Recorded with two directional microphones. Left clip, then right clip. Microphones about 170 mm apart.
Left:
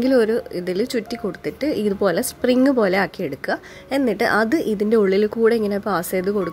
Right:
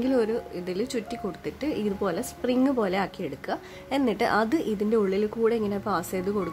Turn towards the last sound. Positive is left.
turn(degrees=20)  # may be behind; listen again after turning